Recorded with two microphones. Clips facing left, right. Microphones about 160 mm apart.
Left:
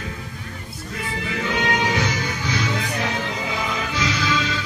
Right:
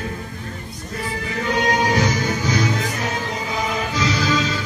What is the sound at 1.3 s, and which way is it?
Music, 40° right (ahead or behind).